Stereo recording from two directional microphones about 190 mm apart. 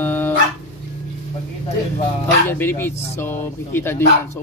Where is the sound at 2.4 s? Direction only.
10° left (ahead or behind).